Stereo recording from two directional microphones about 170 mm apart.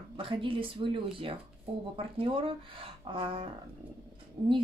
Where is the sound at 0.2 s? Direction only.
30° right (ahead or behind).